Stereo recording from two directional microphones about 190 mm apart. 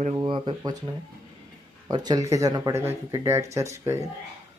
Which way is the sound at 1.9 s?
20° right (ahead or behind).